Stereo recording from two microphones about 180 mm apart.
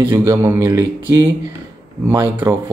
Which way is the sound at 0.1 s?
15° right (ahead or behind).